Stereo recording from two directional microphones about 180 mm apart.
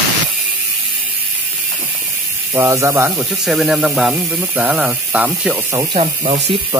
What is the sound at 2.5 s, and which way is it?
Speech, 15° right (ahead or behind).